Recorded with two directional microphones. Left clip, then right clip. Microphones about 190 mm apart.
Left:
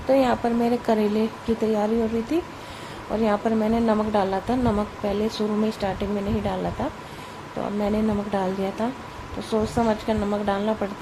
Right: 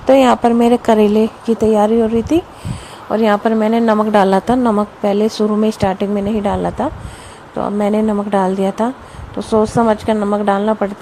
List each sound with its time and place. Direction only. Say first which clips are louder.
0.1 s a woman's voice: right 10 dB; 40° right (ahead or behind)
3.1 s a woman's voice: right 9 dB; 30° right (ahead or behind)